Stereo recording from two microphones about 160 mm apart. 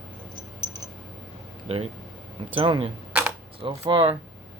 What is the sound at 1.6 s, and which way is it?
Speech, 40° right (ahead or behind).